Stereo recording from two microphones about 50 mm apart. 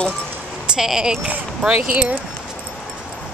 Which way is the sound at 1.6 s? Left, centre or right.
Right.